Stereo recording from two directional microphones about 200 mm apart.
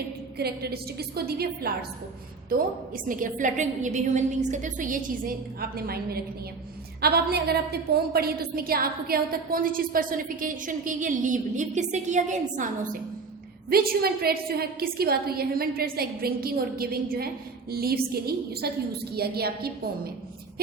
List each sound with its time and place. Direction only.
0.3 s a woman's voice: 50° right (ahead or behind)